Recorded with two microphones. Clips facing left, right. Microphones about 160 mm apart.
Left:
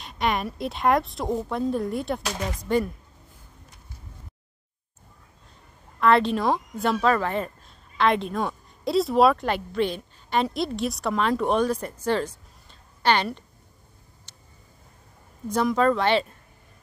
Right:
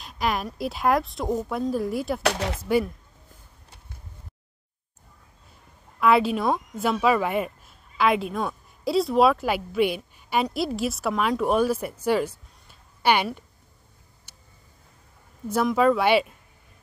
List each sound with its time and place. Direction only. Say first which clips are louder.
0.0 s a woman's voice: left 1 dB; centre (ahead or behind)
2.2 s speech: right 5 dB; 75° right (ahead or behind)
2.6 s speech: right 1 dB; 5° right (ahead or behind)
5.9 s speech: even; 5° right (ahead or behind)
14.3 s a sound: even; 10° right (ahead or behind)
15.4 s speech: right 1 dB; 5° right (ahead or behind)